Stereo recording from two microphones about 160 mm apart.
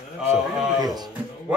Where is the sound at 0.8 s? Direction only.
25° right (ahead or behind).